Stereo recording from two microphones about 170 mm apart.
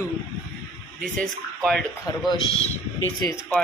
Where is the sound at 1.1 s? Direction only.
5° left (ahead or behind).